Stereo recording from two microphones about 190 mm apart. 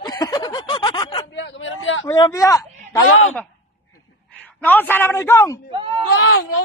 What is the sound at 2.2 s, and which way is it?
Speech, 15° left (ahead or behind).